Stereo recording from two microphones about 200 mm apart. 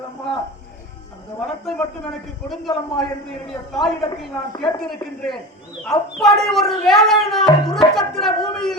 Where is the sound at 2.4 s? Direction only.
Centre (ahead or behind).